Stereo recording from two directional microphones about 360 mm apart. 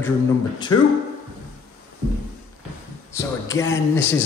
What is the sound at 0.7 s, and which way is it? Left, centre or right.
Speech, centre.